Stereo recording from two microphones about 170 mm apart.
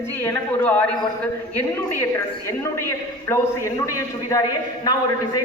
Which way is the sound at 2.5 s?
15° left (ahead or behind).